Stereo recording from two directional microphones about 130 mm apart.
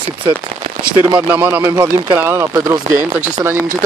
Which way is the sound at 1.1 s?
15° right (ahead or behind).